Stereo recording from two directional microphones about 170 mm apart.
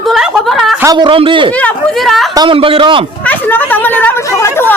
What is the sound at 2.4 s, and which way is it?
Speech, 30° right (ahead or behind).